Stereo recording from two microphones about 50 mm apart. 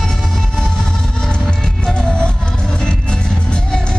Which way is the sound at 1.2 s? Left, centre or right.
Centre.